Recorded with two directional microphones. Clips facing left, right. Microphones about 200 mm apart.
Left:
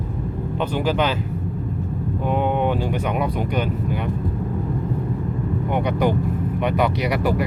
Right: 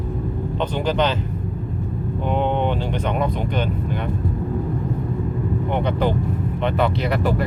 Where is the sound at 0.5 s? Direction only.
5° left (ahead or behind).